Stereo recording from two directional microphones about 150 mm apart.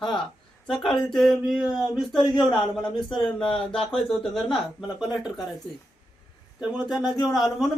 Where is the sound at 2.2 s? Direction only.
30° left (ahead or behind).